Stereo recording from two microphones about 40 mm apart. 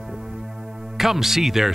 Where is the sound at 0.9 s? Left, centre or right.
Centre.